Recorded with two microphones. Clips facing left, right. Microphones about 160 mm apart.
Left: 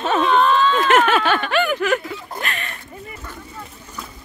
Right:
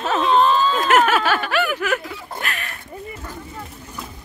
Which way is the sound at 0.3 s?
30° right (ahead or behind).